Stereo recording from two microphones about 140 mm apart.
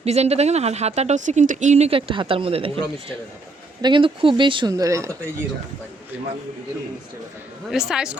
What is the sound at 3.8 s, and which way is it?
Speech, 35° right (ahead or behind).